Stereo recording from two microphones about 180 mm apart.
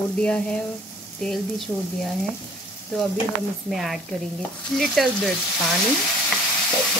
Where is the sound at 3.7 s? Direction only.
Centre (ahead or behind).